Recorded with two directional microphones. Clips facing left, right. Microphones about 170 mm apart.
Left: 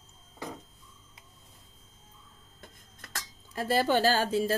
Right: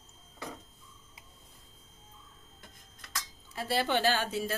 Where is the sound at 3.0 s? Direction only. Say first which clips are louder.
Even; 45° left (ahead or behind).